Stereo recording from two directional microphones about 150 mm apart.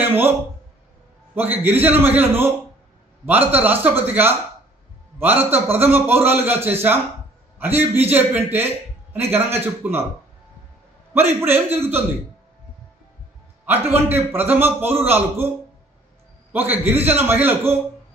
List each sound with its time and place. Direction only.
0.0 s a sound: 15° right (ahead or behind)
1.3 s a man's voice: 15° right (ahead or behind)
11.1 s a man's voice: 15° right (ahead or behind)
13.7 s a man's voice: 15° right (ahead or behind)
16.5 s a man's voice: 15° right (ahead or behind)